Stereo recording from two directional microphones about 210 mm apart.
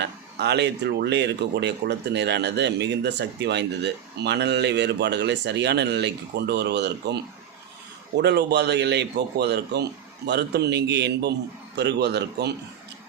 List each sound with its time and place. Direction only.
0.0 s a man's voice: 55° right (ahead or behind)